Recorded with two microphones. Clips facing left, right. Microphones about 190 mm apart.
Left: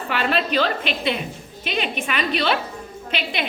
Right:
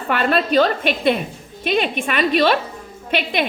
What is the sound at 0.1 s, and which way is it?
A woman's voice, 45° right (ahead or behind).